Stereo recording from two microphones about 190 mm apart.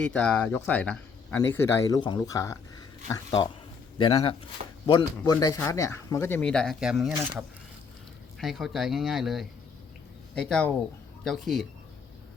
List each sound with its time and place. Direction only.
0.0 s speech: 5° left (ahead or behind); by 7.4 s 10° right (ahead or behind)
8.4 s speech: centre (ahead or behind)